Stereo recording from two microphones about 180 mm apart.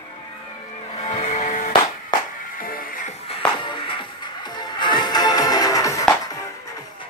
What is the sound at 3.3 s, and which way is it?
Music, 30° left (ahead or behind).